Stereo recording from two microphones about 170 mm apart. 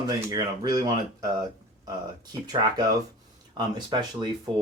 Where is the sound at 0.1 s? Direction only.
25° right (ahead or behind).